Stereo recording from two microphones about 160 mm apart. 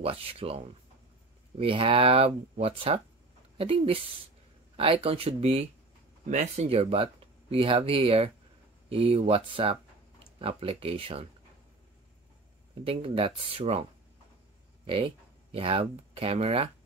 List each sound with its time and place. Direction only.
0.0 s speech: 35° right (ahead or behind)
1.6 s speech: 35° right (ahead or behind)
6.2 s speech: 50° right (ahead or behind)
12.8 s speech: 35° right (ahead or behind)
14.9 s speech: 35° right (ahead or behind)